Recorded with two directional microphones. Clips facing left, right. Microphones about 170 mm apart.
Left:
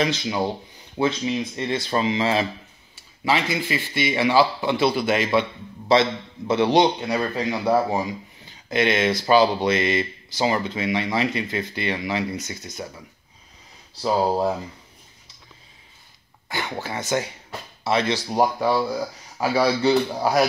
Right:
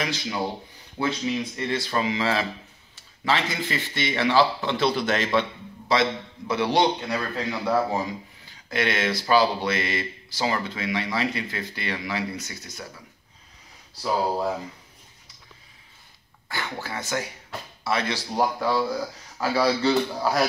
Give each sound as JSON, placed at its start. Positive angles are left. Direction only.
{"t": 0.0, "sound": "a man's voice", "side_deg": 20}
{"t": 3.3, "sound": "a man's voice", "side_deg": 10}
{"t": 5.9, "sound": "a man's voice", "side_deg": 25}
{"t": 16.4, "sound": "a man's voice", "side_deg": 20}